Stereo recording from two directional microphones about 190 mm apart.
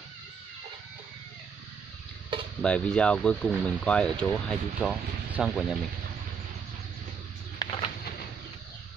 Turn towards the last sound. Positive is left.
turn(degrees=25)  # may be behind; listen again after turning